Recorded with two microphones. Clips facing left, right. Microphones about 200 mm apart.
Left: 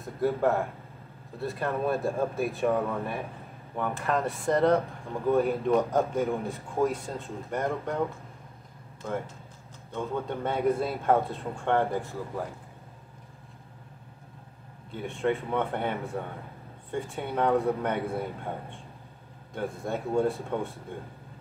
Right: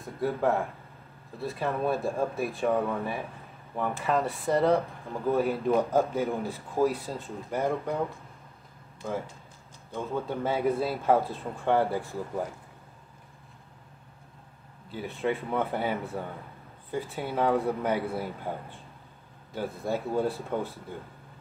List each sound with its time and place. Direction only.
0.0 s speech: centre (ahead or behind)
9.9 s speech: centre (ahead or behind)
14.9 s speech: 5° right (ahead or behind)